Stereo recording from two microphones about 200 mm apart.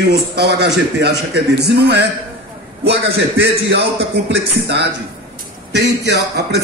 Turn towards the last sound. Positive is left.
turn(degrees=-55)  # may be behind; listen again after turning